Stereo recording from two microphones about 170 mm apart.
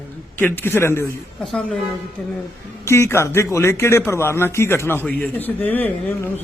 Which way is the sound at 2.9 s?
15° left (ahead or behind).